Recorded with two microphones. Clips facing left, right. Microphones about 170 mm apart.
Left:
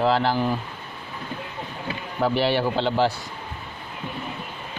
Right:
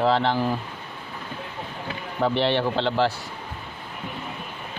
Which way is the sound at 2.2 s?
5° left (ahead or behind).